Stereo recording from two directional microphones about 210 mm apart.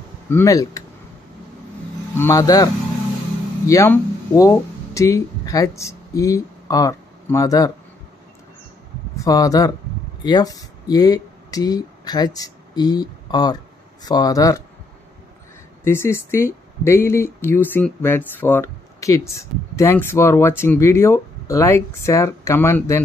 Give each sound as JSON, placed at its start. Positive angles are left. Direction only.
{"t": 0.3, "sound": "speech", "side_deg": 15}
{"t": 2.1, "sound": "speech", "side_deg": 15}
{"t": 9.1, "sound": "speech", "side_deg": 15}
{"t": 15.8, "sound": "speech", "side_deg": 10}